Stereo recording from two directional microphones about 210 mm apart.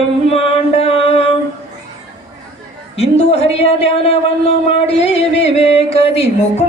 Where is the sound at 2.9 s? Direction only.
30° left (ahead or behind).